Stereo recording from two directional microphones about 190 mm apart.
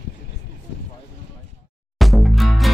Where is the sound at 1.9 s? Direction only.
Centre (ahead or behind).